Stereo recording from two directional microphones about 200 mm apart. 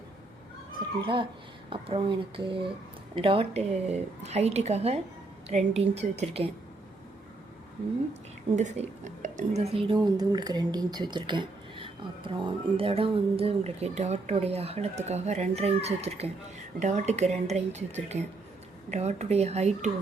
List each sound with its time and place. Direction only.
0.8 s speech: 25° right (ahead or behind)
8.5 s speech: 35° right (ahead or behind)